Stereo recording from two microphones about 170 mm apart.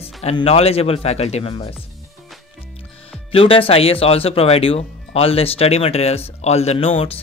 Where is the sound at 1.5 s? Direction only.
25° left (ahead or behind).